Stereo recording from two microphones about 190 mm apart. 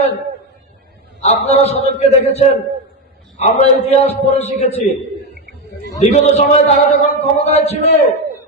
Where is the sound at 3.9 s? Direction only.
35° left (ahead or behind).